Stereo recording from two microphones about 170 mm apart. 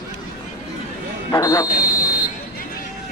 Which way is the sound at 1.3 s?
20° left (ahead or behind).